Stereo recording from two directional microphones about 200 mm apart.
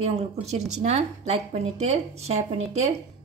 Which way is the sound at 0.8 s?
35° right (ahead or behind).